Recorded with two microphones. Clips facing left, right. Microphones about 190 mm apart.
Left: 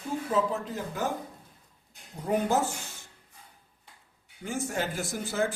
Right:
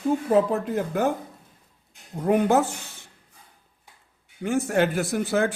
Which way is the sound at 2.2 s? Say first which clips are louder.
Right 7 dB; 65° right (ahead or behind).